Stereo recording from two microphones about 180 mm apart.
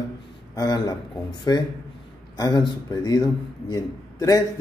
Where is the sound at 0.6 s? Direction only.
20° left (ahead or behind).